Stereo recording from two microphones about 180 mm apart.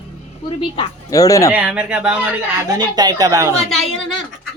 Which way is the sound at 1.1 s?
20° left (ahead or behind).